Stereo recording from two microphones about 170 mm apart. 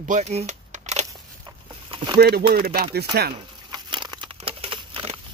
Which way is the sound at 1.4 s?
30° right (ahead or behind).